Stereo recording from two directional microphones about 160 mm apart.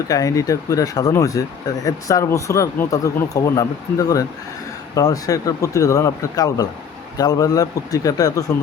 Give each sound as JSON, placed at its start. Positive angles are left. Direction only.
{"t": 0.1, "sound": "speech", "side_deg": 20}